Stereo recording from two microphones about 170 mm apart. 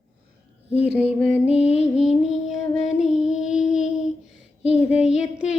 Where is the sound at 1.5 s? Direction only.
40° left (ahead or behind).